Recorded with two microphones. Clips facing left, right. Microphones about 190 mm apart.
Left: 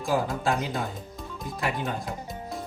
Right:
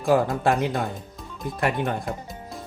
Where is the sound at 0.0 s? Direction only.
60° right (ahead or behind).